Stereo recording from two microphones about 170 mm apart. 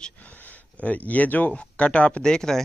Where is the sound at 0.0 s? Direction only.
10° left (ahead or behind).